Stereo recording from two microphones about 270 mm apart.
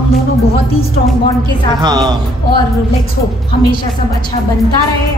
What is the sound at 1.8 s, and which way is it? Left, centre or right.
Speech, centre.